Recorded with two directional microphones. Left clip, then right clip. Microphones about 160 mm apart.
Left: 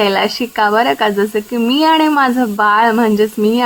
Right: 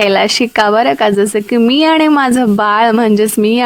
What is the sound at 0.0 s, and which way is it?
A woman's voice, 50° right (ahead or behind).